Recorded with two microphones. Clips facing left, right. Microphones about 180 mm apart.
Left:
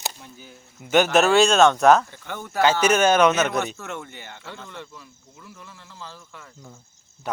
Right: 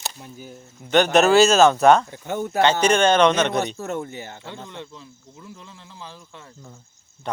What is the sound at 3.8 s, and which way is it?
Speech, 40° right (ahead or behind).